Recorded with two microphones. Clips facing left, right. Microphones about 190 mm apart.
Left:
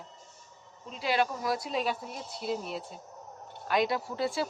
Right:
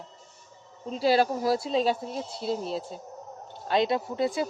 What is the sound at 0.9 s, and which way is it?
A woman's voice, 35° right (ahead or behind).